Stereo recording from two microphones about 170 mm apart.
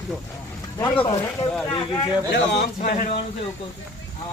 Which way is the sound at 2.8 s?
55° left (ahead or behind).